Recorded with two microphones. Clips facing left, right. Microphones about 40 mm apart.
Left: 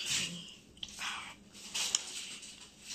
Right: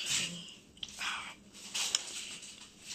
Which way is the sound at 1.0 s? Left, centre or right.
Right.